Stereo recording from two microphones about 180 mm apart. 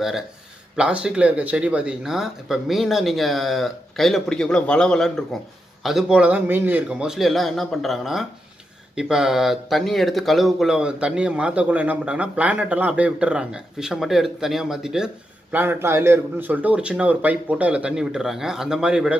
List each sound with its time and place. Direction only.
0.7 s a man's voice: 5° right (ahead or behind)